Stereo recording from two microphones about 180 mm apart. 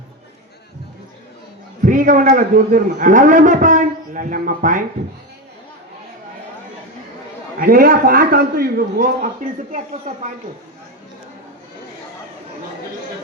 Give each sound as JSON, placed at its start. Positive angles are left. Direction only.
{"t": 1.8, "sound": "a man's voice", "side_deg": -45}
{"t": 7.6, "sound": "a man's voice", "side_deg": -55}